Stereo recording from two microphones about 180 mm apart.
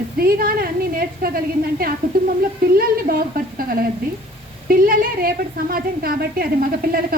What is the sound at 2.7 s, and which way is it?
Speech, 55° right (ahead or behind).